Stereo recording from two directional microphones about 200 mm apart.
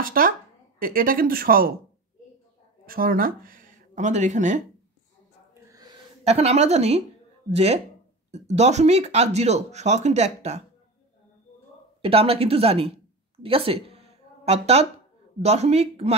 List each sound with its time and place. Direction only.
0.0 s a sound: 45° right (ahead or behind)
0.7 s speech: 45° right (ahead or behind)
2.9 s speech: 45° right (ahead or behind)
5.5 s snort: 15° right (ahead or behind)
6.2 s speech: 30° right (ahead or behind)
12.0 s speech: 30° right (ahead or behind)